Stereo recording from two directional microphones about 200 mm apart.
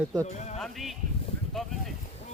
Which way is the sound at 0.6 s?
Centre (ahead or behind).